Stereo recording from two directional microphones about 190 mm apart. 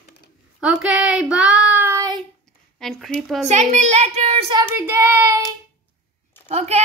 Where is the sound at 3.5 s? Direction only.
35° right (ahead or behind).